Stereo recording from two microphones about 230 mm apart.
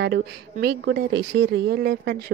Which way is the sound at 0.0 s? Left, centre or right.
Right.